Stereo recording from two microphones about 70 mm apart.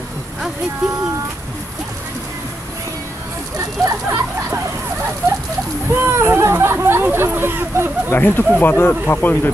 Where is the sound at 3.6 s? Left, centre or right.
Right.